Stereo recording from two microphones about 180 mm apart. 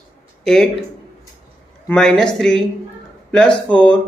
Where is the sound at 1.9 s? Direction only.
5° left (ahead or behind).